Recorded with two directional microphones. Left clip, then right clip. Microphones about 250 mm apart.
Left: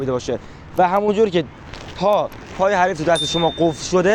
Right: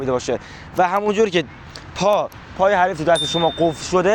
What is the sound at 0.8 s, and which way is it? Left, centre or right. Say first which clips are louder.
Speech: left 1 dB; right.